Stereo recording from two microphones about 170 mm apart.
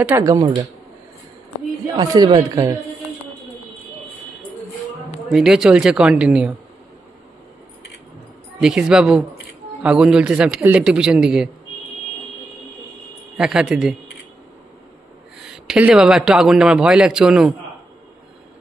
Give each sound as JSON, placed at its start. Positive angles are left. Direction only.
{"t": 0.0, "sound": "a man's voice", "side_deg": -15}
{"t": 2.0, "sound": "a man's voice", "side_deg": -25}
{"t": 5.3, "sound": "a man's voice", "side_deg": 0}
{"t": 8.5, "sound": "a man's voice", "side_deg": -5}
{"t": 13.4, "sound": "a man's voice", "side_deg": -5}
{"t": 15.3, "sound": "a man's voice", "side_deg": 0}